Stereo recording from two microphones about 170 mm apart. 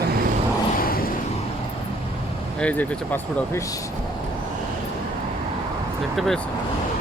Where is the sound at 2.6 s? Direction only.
10° left (ahead or behind).